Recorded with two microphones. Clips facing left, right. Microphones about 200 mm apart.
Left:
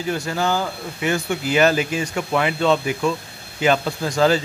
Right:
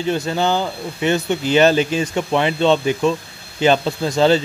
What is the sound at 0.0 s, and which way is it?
Speech, 25° right (ahead or behind).